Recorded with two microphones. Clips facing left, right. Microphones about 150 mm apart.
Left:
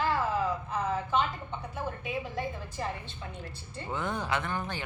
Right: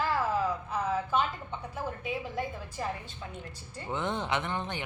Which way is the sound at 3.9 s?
20° right (ahead or behind).